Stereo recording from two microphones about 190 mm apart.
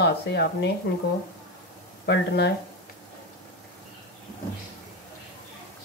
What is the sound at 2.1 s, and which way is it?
Speech, 60° left (ahead or behind).